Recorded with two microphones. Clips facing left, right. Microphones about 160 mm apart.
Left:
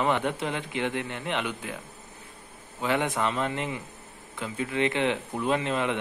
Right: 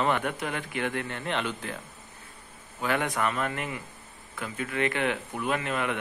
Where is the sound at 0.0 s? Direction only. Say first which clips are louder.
Left 1 dB; 20° left (ahead or behind).